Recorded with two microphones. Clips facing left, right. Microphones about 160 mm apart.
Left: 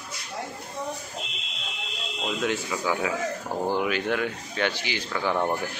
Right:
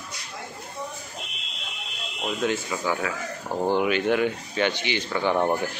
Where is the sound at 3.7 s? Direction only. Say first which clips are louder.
Right 6 dB; centre (ahead or behind).